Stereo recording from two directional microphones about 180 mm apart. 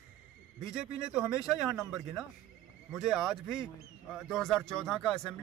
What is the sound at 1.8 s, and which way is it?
Speech, 15° right (ahead or behind).